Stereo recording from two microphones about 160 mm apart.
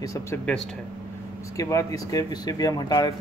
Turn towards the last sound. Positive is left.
turn(degrees=25)  # may be behind; listen again after turning